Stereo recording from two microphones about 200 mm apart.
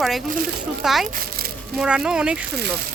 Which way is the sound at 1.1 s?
50° right (ahead or behind).